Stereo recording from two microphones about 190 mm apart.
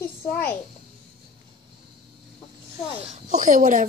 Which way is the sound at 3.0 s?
40° right (ahead or behind).